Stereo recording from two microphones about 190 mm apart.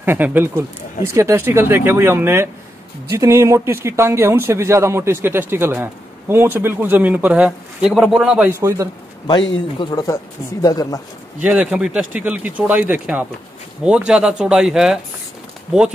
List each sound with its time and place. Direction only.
0.0 s speech: 10° right (ahead or behind)
9.8 s speech: 20° left (ahead or behind)
11.4 s speech: 5° right (ahead or behind)